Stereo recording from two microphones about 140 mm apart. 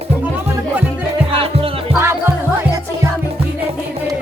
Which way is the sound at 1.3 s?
45° right (ahead or behind).